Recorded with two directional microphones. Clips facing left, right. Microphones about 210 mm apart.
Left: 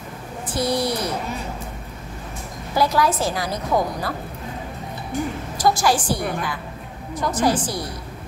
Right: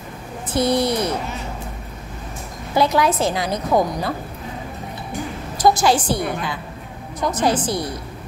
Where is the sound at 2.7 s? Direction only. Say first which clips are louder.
Right 2 dB; 20° right (ahead or behind).